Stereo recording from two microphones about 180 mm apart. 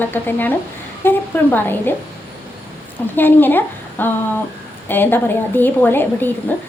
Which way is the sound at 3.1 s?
10° left (ahead or behind).